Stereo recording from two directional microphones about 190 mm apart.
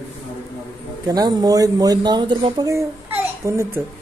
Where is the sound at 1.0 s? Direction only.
20° right (ahead or behind).